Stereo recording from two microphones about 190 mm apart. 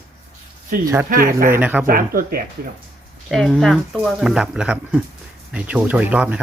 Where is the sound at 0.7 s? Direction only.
50° right (ahead or behind).